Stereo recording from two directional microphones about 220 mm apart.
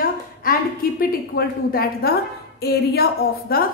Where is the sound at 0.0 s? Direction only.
40° left (ahead or behind).